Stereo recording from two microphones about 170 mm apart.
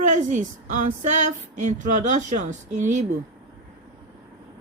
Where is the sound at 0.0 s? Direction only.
45° right (ahead or behind).